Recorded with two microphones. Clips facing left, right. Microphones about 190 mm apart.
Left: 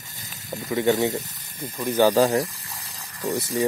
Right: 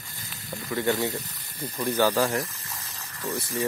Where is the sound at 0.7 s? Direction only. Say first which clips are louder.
Left 5 dB; 20° left (ahead or behind).